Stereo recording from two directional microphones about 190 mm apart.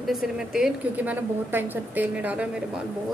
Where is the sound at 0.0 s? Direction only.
Centre (ahead or behind).